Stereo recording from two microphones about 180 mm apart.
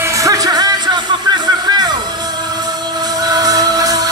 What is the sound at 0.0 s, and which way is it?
Music, 15° right (ahead or behind).